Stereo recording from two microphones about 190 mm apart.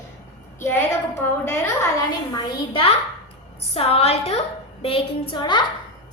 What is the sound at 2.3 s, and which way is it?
A woman's voice, 30° left (ahead or behind).